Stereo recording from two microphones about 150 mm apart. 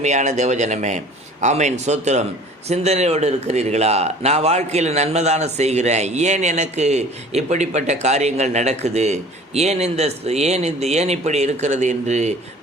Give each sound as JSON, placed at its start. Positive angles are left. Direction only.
{"t": 0.0, "sound": "a man's voice", "side_deg": -50}